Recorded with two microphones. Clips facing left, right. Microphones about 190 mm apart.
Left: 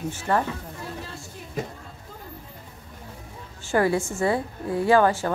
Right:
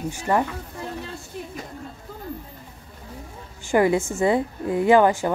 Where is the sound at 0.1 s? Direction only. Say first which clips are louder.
Right 2 dB; 15° right (ahead or behind).